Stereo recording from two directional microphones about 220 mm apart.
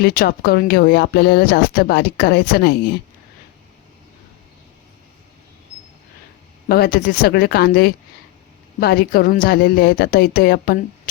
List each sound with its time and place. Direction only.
0.0 s speech: 40° left (ahead or behind)
6.7 s speech: 45° left (ahead or behind)